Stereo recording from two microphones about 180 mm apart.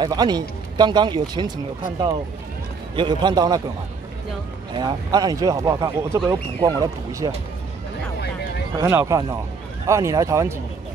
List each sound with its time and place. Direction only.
0.0 s speech: 20° right (ahead or behind)
3.0 s speech: 25° right (ahead or behind)
4.7 s speech: 25° right (ahead or behind)
8.7 s speech: 15° right (ahead or behind)